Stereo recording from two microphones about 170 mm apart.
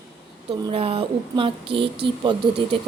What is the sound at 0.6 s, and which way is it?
Speech, 35° right (ahead or behind).